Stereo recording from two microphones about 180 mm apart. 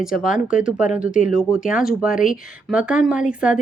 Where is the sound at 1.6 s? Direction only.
50° left (ahead or behind).